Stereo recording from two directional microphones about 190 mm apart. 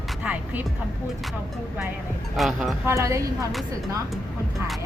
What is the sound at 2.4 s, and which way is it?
Speech, centre (ahead or behind).